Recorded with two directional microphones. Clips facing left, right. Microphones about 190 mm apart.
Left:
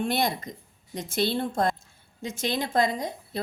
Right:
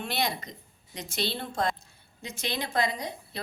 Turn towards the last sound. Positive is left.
turn(degrees=45)  # may be behind; listen again after turning